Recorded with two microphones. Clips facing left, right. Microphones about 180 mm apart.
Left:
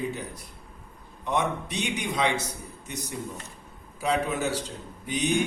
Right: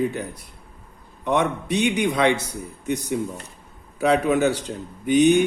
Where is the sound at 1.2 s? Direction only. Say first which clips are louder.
Right 5 dB; 65° right (ahead or behind).